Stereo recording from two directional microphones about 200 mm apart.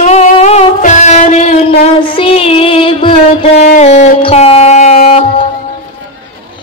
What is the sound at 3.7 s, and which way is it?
Music, 35° left (ahead or behind).